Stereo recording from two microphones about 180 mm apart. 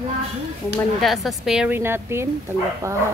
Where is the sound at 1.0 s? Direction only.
Centre (ahead or behind); by 3.0 s 15° right (ahead or behind).